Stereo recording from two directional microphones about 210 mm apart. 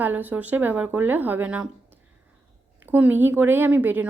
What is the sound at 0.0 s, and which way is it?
A woman's voice, 10° right (ahead or behind).